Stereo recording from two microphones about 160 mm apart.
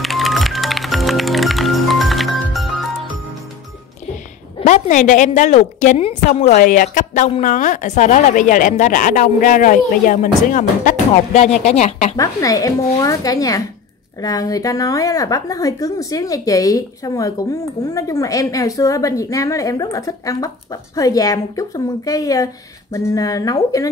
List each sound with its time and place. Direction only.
0.0 s music: centre (ahead or behind)
4.6 s a woman's voice: 50° left (ahead or behind)
6.5 s a woman's voice: 55° left (ahead or behind)
7.4 s a woman's voice: 55° left (ahead or behind)
12.2 s speech: 20° left (ahead or behind)